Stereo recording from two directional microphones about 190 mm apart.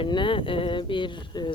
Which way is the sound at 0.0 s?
25° left (ahead or behind).